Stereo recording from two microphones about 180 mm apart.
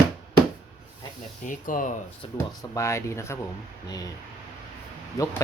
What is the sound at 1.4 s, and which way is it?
Speech, 45° left (ahead or behind).